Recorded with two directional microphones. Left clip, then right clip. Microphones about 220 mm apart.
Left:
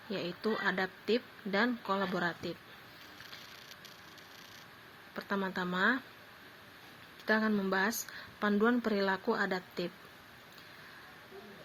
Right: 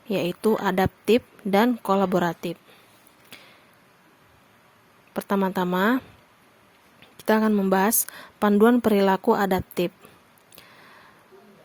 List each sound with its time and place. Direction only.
0.1 s speech: 55° right (ahead or behind)
5.1 s speech: 55° right (ahead or behind)
7.3 s speech: 55° right (ahead or behind)